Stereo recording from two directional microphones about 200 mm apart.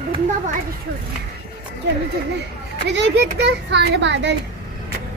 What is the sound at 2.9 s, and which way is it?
A child's voice, 60° right (ahead or behind).